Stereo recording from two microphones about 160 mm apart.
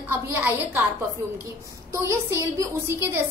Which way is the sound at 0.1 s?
10° right (ahead or behind).